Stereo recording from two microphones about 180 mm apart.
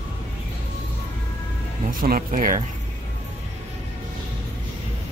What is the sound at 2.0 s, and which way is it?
Speech, 50° right (ahead or behind).